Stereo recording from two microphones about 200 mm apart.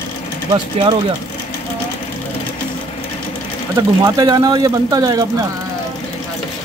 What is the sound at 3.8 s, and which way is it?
Speech, 20° right (ahead or behind).